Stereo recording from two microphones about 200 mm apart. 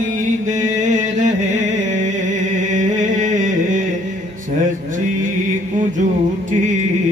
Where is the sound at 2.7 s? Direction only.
40° right (ahead or behind).